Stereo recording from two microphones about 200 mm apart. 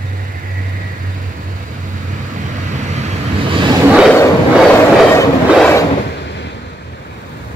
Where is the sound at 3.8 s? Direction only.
5° right (ahead or behind).